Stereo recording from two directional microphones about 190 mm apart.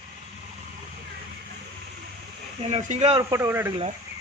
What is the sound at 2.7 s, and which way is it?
Speech, 35° right (ahead or behind).